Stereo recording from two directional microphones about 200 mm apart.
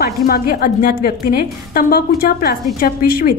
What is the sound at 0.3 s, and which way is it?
A woman's voice, 45° left (ahead or behind).